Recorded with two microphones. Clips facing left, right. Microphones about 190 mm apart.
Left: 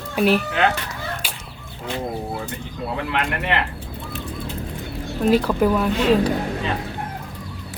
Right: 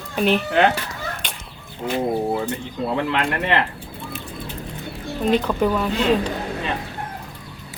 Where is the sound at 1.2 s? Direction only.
5° left (ahead or behind).